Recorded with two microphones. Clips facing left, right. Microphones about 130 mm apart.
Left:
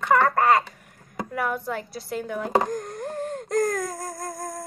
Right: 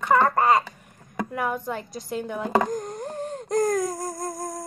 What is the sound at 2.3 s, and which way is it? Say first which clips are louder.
Speech: even; 20° right (ahead or behind).